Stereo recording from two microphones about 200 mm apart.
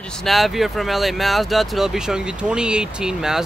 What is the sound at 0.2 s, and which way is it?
Speech, centre (ahead or behind).